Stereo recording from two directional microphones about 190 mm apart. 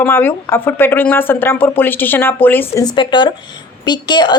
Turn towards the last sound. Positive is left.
turn(degrees=20)  # may be behind; listen again after turning